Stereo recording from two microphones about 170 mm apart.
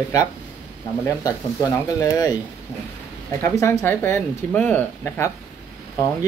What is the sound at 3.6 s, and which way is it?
Speech, 15° left (ahead or behind).